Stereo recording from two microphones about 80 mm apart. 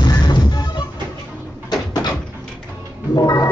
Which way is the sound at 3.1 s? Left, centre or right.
Left.